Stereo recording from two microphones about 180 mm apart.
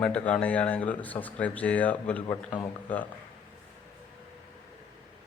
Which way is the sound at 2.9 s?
10° left (ahead or behind).